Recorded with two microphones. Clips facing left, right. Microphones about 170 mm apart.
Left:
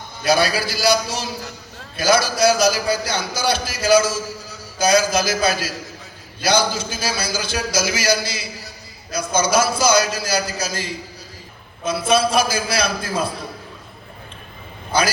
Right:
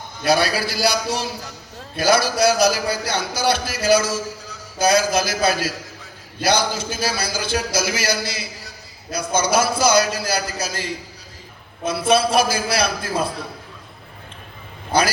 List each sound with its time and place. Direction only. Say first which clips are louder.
0.3 s a man's voice: left 1 dB; 60° right (ahead or behind)
11.9 s a man's voice: even; 60° right (ahead or behind)